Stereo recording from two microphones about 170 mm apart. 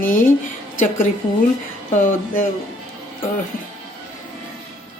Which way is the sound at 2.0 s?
50° left (ahead or behind).